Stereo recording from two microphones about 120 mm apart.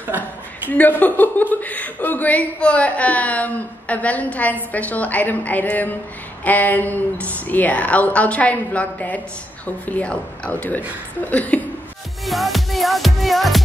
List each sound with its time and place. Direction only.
0.1 s a woman's voice: 15° right (ahead or behind)
0.7 s a woman's voice: 15° left (ahead or behind)
12.3 s music: centre (ahead or behind)